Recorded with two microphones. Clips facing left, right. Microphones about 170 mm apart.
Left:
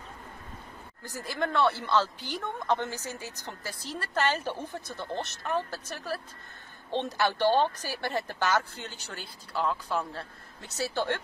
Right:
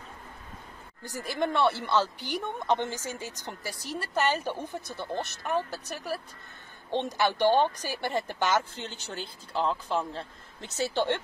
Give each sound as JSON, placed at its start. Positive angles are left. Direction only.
{"t": 1.0, "sound": "speech", "side_deg": -20}